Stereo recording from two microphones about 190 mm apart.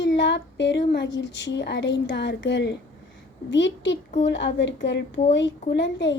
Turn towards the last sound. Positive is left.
turn(degrees=70)  # may be behind; listen again after turning